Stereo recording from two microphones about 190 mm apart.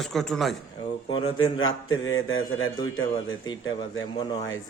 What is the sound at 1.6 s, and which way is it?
A man's voice, 90° left.